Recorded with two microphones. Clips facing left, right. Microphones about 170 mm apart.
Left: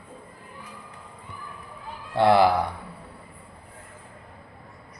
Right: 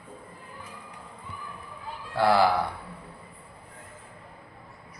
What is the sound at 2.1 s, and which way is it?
Speech, 20° left (ahead or behind).